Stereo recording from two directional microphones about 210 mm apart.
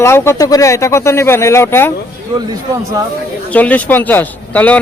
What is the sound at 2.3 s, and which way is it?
Speech, 20° right (ahead or behind).